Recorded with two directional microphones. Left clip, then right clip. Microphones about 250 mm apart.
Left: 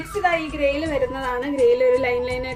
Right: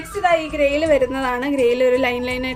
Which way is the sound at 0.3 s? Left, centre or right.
Right.